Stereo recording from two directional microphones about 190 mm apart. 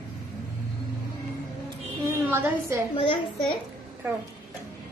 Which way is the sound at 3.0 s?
25° left (ahead or behind).